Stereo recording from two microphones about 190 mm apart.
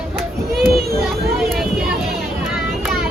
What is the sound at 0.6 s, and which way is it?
Children playing, 55° right (ahead or behind).